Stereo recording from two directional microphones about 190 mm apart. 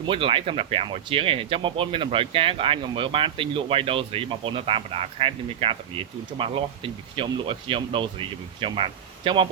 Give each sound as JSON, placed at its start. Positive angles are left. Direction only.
{"t": 0.1, "sound": "speech", "side_deg": -30}